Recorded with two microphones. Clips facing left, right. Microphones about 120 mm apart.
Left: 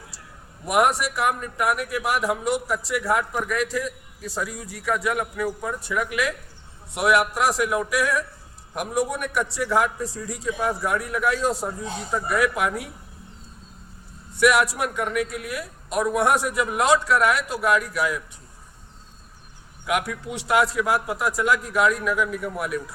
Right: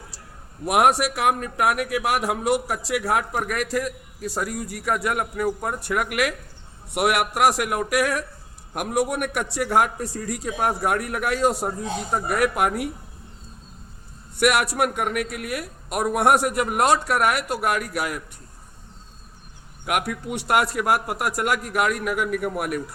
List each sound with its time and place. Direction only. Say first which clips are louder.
0.7 s a man's voice: right 2 dB; 75° right (ahead or behind)
3.4 s a man's voice: even; 60° right (ahead or behind)
14.3 s a man's voice: left 1 dB; 60° right (ahead or behind)
19.9 s a man's voice: even; 55° right (ahead or behind)